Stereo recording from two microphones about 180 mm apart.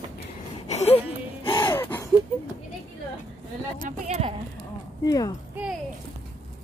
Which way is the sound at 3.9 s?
40° right (ahead or behind).